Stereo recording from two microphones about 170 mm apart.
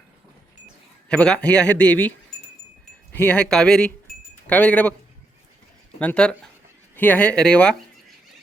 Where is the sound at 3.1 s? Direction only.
5° left (ahead or behind).